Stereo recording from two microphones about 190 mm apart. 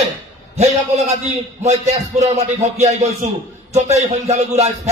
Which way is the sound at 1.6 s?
35° right (ahead or behind).